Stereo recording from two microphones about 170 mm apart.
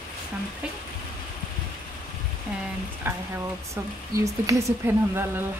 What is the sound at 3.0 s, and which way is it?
Speech, 15° right (ahead or behind).